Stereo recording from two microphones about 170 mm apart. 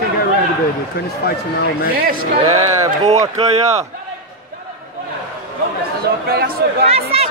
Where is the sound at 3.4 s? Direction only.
40° right (ahead or behind).